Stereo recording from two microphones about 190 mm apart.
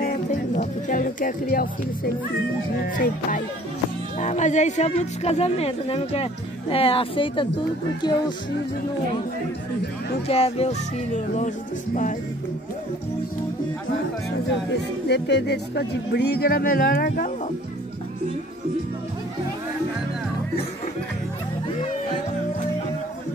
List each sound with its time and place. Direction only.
0.3 s speech: 40° left (ahead or behind)
3.0 s speech: 45° left (ahead or behind); by 8.2 s 20° left (ahead or behind)
10.2 s speech: 30° left (ahead or behind)
15.0 s speech: 65° left (ahead or behind)